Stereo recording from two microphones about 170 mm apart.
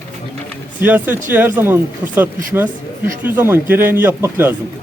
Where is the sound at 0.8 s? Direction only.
10° right (ahead or behind).